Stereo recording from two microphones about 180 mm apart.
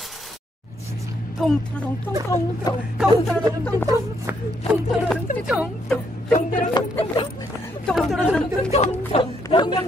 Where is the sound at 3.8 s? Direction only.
20° right (ahead or behind).